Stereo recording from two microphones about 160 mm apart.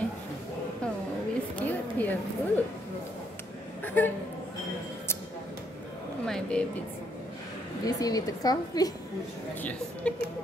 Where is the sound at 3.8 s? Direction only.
10° left (ahead or behind).